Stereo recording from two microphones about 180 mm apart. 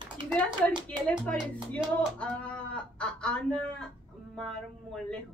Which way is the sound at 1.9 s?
5° left (ahead or behind).